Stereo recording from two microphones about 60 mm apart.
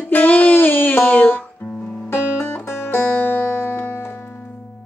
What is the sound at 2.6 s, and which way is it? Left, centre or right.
Music, left.